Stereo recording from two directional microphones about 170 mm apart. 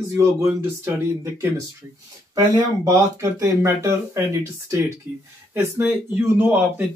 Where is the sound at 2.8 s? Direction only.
20° right (ahead or behind).